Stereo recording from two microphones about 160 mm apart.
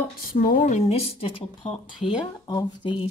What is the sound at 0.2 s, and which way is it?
Speech, 65° left (ahead or behind).